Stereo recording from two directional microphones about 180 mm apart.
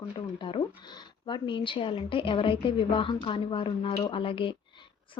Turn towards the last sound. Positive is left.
turn(degrees=30)  # may be behind; listen again after turning